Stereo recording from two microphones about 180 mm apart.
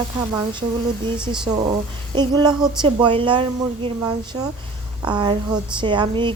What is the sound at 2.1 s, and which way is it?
A woman's voice, 25° right (ahead or behind).